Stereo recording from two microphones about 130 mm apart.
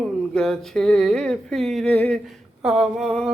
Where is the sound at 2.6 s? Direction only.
5° right (ahead or behind).